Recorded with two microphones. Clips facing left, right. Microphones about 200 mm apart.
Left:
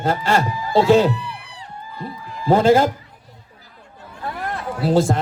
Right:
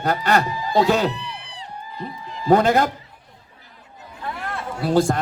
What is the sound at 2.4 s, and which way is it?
Speech, 25° left (ahead or behind).